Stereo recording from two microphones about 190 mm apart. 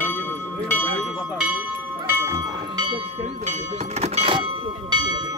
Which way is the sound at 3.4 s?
35° right (ahead or behind).